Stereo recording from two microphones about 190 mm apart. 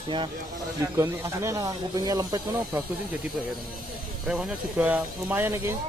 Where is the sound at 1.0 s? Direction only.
15° right (ahead or behind).